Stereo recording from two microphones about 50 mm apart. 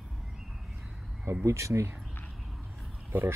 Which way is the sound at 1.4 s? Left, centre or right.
Right.